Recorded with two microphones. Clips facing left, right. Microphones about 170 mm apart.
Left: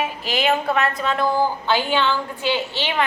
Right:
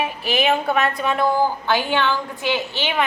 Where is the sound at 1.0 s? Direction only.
15° right (ahead or behind).